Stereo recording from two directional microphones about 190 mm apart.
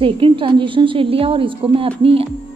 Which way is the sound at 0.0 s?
30° right (ahead or behind).